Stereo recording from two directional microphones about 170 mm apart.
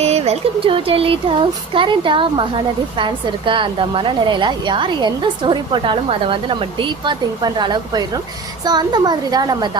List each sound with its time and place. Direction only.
0.0 s a woman's voice: 40° right (ahead or behind)